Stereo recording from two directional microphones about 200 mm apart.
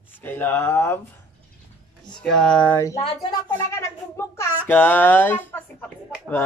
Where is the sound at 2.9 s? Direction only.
25° left (ahead or behind).